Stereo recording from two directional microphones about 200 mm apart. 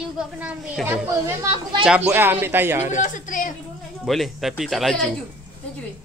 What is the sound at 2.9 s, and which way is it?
Speech, 40° left (ahead or behind).